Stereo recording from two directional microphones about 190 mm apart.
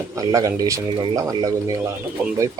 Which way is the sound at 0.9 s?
30° right (ahead or behind).